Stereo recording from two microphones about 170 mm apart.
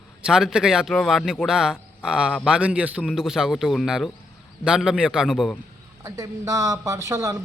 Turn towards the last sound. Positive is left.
turn(degrees=-20)  # may be behind; listen again after turning